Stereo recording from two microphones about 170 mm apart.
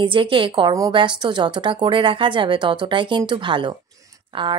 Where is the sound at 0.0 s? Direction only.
30° right (ahead or behind).